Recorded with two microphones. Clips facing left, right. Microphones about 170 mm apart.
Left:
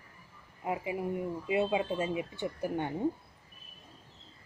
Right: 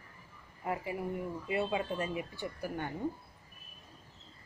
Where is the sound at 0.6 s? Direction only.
20° left (ahead or behind).